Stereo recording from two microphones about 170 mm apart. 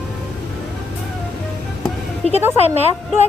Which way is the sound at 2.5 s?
40° left (ahead or behind).